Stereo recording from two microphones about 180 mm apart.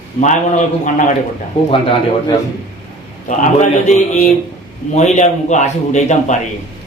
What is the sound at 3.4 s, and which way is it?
A man's voice, 40° left (ahead or behind).